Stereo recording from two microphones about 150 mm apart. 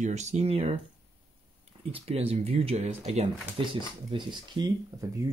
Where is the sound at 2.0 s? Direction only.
40° right (ahead or behind).